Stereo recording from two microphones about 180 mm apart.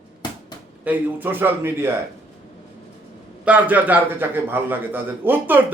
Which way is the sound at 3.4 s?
10° right (ahead or behind).